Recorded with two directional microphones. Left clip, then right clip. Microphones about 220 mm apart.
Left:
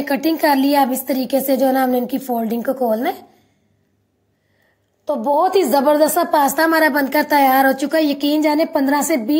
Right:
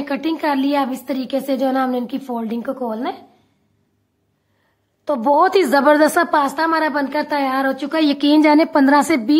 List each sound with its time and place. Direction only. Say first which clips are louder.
0.0 s a woman's voice: left 4 dB; 5° left (ahead or behind)
5.0 s a woman's voice: right 2 dB; 20° right (ahead or behind)
6.4 s a woman's voice: left 3 dB; 10° left (ahead or behind)
7.9 s a woman's voice: right 1 dB; 15° right (ahead or behind)